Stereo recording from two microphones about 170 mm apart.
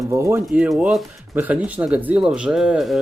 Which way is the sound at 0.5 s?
5° right (ahead or behind).